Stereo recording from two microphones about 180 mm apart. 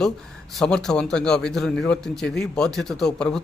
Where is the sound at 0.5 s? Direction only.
5° left (ahead or behind).